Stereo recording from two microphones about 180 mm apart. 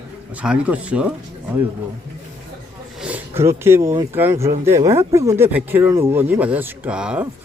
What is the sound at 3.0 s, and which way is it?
Speech, 10° right (ahead or behind).